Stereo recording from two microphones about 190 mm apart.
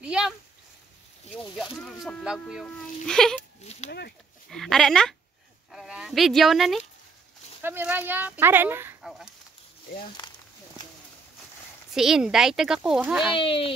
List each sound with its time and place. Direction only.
0.0 s speech: 5° right (ahead or behind)
4.5 s speech: centre (ahead or behind)
10.2 s a sound: 20° left (ahead or behind)
11.9 s speech: centre (ahead or behind)
13.3 s speech: 30° left (ahead or behind)